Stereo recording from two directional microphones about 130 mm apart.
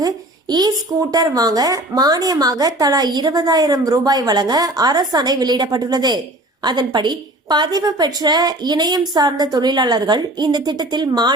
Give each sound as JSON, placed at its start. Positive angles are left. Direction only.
{"t": 0.0, "sound": "a child's voice", "side_deg": -30}